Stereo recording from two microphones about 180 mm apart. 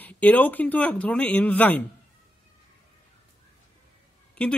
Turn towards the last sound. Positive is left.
turn(degrees=5)  # may be behind; listen again after turning